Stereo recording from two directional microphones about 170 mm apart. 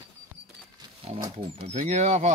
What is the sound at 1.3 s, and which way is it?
Speech, 35° right (ahead or behind).